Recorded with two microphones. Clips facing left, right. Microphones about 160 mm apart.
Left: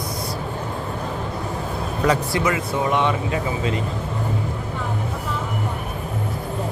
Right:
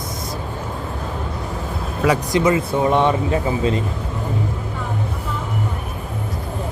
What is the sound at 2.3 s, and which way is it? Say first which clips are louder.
Speech: right 5 dB; 25° right (ahead or behind).